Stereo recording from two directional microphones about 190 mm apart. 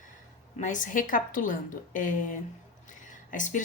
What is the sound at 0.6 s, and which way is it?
A woman's voice, 40° left (ahead or behind).